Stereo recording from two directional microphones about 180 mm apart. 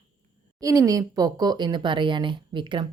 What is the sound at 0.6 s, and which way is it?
A woman's voice, 20° right (ahead or behind).